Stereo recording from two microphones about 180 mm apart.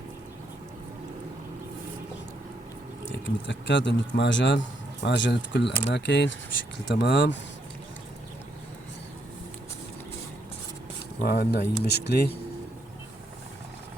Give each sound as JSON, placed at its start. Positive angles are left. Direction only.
{"t": 3.1, "sound": "speech", "side_deg": 90}
{"t": 11.2, "sound": "speech", "side_deg": 60}